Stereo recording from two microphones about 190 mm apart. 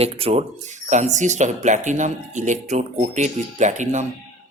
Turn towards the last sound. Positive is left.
turn(degrees=-40)  # may be behind; listen again after turning